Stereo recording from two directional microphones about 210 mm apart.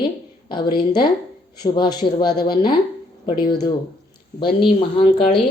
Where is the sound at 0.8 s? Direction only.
20° left (ahead or behind).